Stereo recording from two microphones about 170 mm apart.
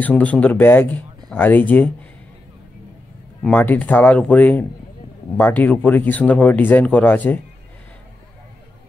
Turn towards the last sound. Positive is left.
turn(degrees=10)  # may be behind; listen again after turning